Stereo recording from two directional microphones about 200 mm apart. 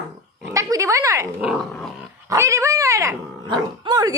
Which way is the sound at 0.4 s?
15° right (ahead or behind).